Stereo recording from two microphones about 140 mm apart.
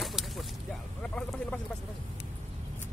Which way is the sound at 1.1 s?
10° left (ahead or behind).